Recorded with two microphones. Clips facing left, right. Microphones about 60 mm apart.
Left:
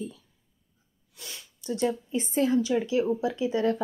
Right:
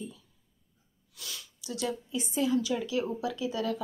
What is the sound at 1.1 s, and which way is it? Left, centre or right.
Speech, left.